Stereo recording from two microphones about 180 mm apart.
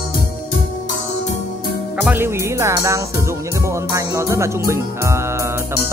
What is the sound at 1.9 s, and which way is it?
Speech, 10° right (ahead or behind).